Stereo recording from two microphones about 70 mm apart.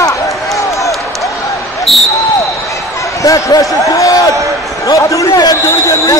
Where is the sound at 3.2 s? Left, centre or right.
Left.